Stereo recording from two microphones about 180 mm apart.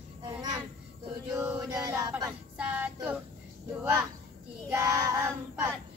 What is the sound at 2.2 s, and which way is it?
Child singing, 10° right (ahead or behind).